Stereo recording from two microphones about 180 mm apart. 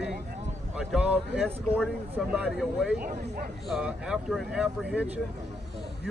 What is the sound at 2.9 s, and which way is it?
Speech, 50° right (ahead or behind).